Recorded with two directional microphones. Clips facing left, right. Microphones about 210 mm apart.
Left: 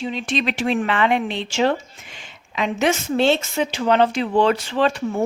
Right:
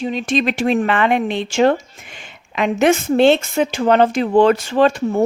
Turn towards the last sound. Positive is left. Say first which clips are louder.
# right 5 dB
turn(degrees=-45)  # may be behind; listen again after turning